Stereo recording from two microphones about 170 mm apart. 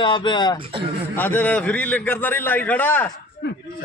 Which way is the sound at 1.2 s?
10° left (ahead or behind).